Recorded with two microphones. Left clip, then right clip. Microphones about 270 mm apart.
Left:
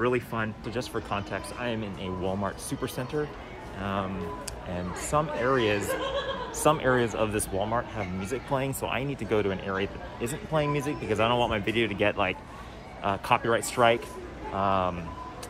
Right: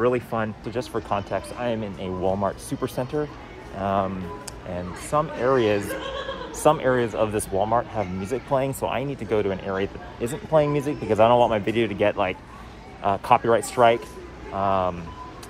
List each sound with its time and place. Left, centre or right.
0.0 s speech: centre
5.1 s speech: centre